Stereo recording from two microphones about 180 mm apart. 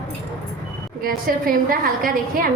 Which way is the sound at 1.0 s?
55° right (ahead or behind).